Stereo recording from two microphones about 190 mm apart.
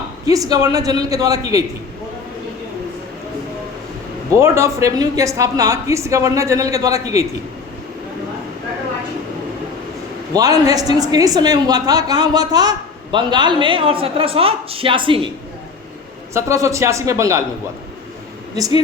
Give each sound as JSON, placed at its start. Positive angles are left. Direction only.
{"t": 0.3, "sound": "a woman's voice", "side_deg": -20}
{"t": 4.3, "sound": "speech", "side_deg": -15}
{"t": 10.3, "sound": "a woman's voice", "side_deg": -20}
{"t": 16.3, "sound": "speech", "side_deg": -15}